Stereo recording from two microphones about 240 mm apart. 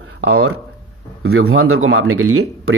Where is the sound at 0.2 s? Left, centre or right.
Right.